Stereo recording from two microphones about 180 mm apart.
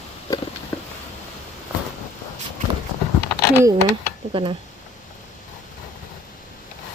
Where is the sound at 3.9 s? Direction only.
30° right (ahead or behind).